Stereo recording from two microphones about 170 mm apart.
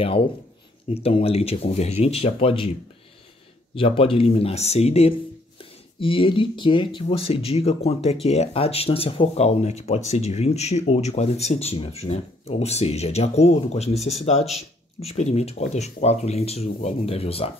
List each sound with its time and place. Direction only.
0.9 s speech: 35° left (ahead or behind)
3.7 s speech: 35° left (ahead or behind)